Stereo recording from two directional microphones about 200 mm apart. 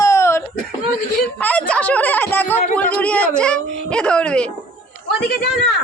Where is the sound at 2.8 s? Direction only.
5° left (ahead or behind).